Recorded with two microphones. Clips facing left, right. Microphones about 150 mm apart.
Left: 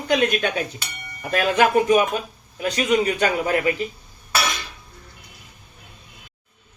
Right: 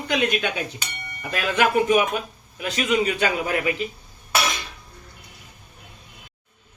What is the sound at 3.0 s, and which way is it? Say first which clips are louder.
Speech: left 2 dB; 40° left (ahead or behind).